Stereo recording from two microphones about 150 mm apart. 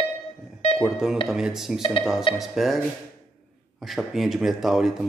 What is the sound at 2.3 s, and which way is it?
Speech, centre (ahead or behind).